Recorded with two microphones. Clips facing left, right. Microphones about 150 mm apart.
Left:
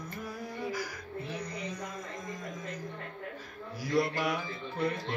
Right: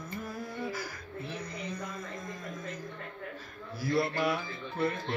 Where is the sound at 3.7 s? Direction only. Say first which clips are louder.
Even; 15° left (ahead or behind).